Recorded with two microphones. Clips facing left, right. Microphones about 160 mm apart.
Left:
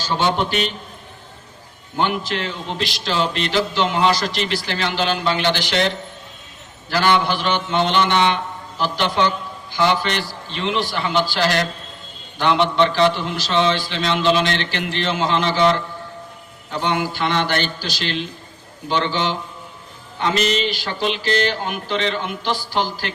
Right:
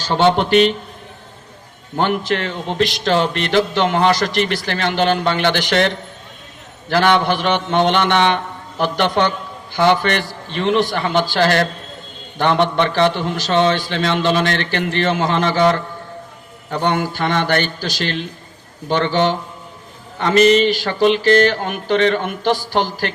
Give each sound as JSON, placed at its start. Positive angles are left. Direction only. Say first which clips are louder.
{"t": 2.0, "sound": "a man's voice", "louder": "right 3 dB", "side_deg": -55}
{"t": 6.9, "sound": "a man's voice", "louder": "right 3 dB", "side_deg": -60}